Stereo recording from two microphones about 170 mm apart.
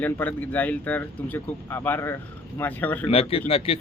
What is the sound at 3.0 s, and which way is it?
Speech, 35° left (ahead or behind).